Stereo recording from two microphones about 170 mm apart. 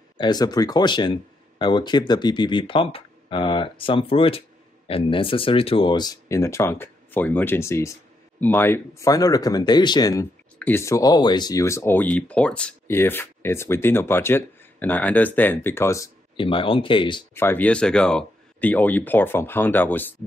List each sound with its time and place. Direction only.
0.2 s speech: 25° left (ahead or behind)
16.3 s speech: 30° left (ahead or behind)
17.3 s speech: 15° left (ahead or behind)